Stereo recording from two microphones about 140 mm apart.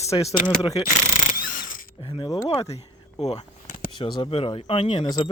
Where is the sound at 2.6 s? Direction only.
45° left (ahead or behind).